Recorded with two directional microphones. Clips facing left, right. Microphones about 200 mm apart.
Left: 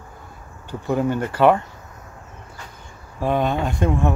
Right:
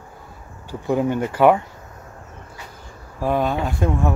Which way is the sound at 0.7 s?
10° right (ahead or behind).